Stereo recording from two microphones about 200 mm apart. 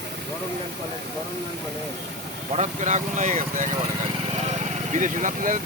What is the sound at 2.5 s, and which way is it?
Speech, 35° right (ahead or behind).